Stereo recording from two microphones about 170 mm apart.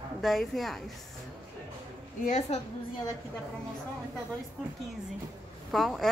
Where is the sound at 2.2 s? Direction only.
45° left (ahead or behind).